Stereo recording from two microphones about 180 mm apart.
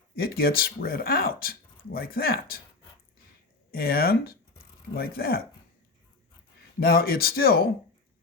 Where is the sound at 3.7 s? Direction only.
55° left (ahead or behind).